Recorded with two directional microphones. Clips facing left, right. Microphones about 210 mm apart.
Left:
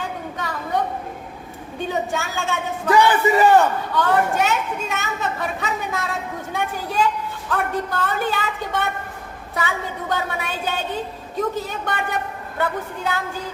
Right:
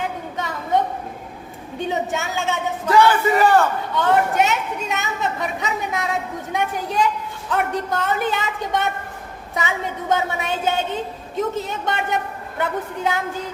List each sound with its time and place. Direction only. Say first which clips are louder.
0.3 s a sound: right 4 dB; 20° right (ahead or behind)
1.9 s speech: right 1 dB; 20° right (ahead or behind)
2.9 s speech: even; 15° left (ahead or behind)
3.9 s speech: right 2 dB; 20° right (ahead or behind)